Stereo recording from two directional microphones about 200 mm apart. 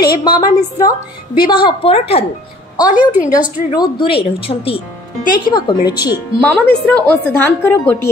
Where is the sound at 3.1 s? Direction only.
5° right (ahead or behind).